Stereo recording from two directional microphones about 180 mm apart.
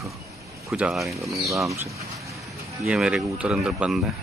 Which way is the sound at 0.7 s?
5° right (ahead or behind).